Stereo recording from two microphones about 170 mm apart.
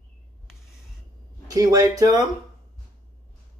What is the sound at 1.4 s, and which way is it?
Speech, 20° right (ahead or behind).